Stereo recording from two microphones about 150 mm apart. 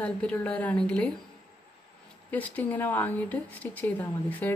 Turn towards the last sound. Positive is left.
turn(degrees=10)  # may be behind; listen again after turning